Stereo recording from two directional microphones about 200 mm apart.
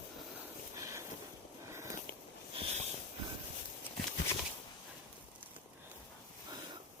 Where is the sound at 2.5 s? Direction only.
25° right (ahead or behind).